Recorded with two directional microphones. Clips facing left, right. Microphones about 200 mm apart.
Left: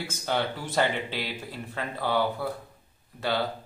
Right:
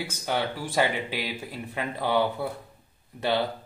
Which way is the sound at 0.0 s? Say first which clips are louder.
Even; 10° right (ahead or behind).